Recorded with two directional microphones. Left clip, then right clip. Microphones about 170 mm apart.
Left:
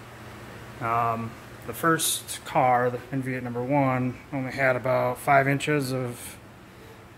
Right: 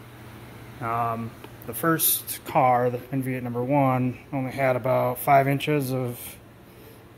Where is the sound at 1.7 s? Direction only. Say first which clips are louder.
Left 1 dB; 35° right (ahead or behind).